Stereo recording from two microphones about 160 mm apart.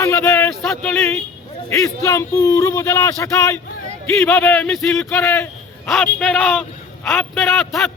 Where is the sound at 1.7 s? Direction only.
15° left (ahead or behind).